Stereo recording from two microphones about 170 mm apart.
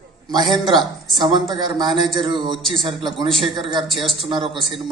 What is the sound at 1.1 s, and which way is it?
A man's voice, 25° right (ahead or behind).